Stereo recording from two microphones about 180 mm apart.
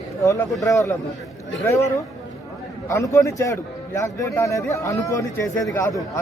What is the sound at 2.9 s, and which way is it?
A man's voice, 15° left (ahead or behind).